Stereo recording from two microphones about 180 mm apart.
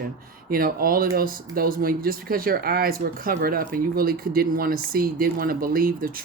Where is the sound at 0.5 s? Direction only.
55° right (ahead or behind).